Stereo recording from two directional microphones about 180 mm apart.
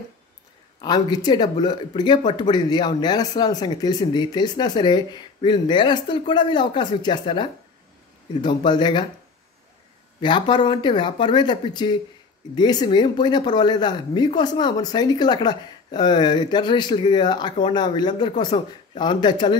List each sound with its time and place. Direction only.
0.7 s speech: 20° left (ahead or behind)
10.2 s speech: 25° left (ahead or behind)